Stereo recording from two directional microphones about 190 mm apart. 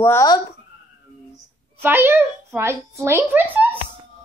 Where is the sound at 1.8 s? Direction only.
10° right (ahead or behind).